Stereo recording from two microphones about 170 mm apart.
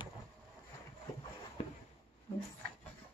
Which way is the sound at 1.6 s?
35° left (ahead or behind).